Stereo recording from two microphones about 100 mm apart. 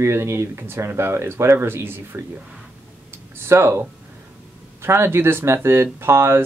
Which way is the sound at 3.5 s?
25° right (ahead or behind).